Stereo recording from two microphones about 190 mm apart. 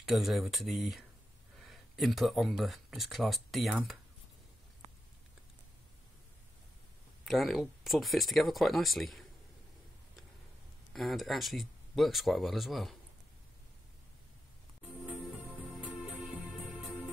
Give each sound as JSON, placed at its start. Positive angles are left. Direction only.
{"t": 0.0, "sound": "speech", "side_deg": 0}
{"t": 7.2, "sound": "speech", "side_deg": 0}
{"t": 10.9, "sound": "speech", "side_deg": 0}
{"t": 15.8, "sound": "music", "side_deg": 0}